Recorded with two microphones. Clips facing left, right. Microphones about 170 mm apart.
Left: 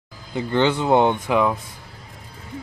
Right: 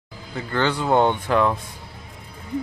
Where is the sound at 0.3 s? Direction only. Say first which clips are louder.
Left 4 dB; 20° left (ahead or behind).